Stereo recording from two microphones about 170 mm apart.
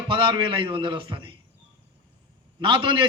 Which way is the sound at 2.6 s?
30° right (ahead or behind).